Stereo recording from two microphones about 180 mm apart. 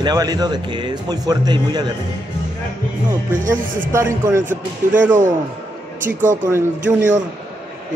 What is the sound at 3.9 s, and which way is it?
Speech, 15° right (ahead or behind).